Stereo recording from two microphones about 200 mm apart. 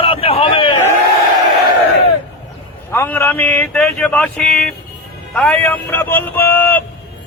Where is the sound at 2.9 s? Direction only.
10° left (ahead or behind).